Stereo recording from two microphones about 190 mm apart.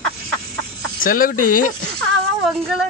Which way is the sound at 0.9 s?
45° left (ahead or behind).